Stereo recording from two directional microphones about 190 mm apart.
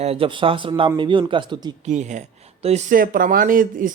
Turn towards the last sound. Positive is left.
turn(degrees=-45)  # may be behind; listen again after turning